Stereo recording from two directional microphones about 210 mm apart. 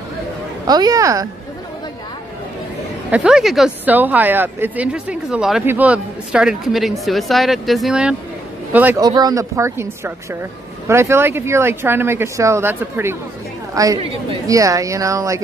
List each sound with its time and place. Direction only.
0.7 s speech: 20° right (ahead or behind)
3.1 s speech: 5° right (ahead or behind)
9.0 s speech: 20° right (ahead or behind)